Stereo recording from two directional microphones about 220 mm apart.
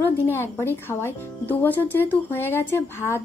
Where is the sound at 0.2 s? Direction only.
10° left (ahead or behind).